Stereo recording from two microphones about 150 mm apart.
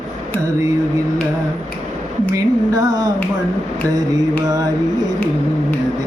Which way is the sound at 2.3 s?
25° right (ahead or behind).